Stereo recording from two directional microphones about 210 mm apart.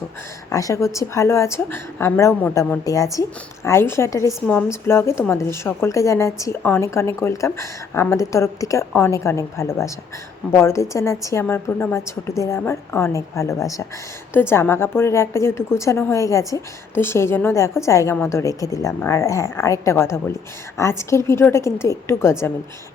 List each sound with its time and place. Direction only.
0.5 s a woman's voice: 15° left (ahead or behind)